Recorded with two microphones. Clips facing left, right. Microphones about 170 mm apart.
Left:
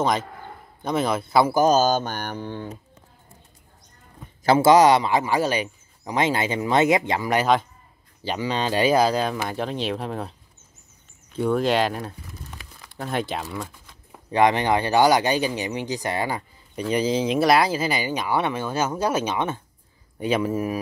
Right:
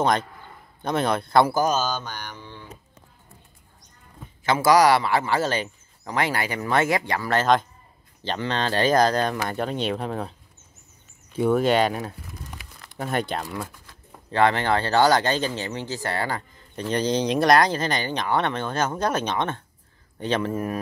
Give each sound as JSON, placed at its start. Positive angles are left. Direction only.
{"t": 0.0, "sound": "speech", "side_deg": 0}
{"t": 1.7, "sound": "mantra", "side_deg": 45}
{"t": 4.5, "sound": "speech", "side_deg": 25}
{"t": 11.3, "sound": "speech", "side_deg": -5}
{"t": 14.3, "sound": "speech", "side_deg": 15}